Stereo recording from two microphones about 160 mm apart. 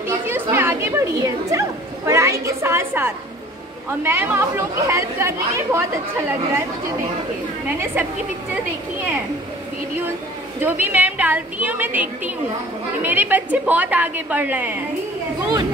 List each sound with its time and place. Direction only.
0.3 s speech: 15° right (ahead or behind)
7.6 s speech: 10° right (ahead or behind)
10.6 s speech: 10° right (ahead or behind)